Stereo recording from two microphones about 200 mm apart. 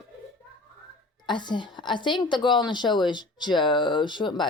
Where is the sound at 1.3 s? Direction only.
20° left (ahead or behind).